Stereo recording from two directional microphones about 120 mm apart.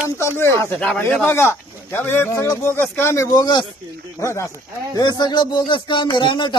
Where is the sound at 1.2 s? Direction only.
20° left (ahead or behind).